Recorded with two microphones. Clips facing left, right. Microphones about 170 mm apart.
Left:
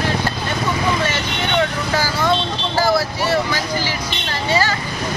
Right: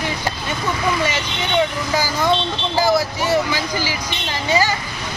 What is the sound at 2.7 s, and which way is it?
Vehicle, 15° right (ahead or behind).